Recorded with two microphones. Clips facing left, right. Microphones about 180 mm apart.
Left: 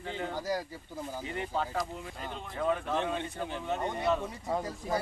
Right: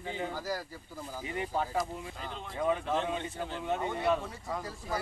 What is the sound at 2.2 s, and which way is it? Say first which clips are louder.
Speech: left 1 dB; centre (ahead or behind).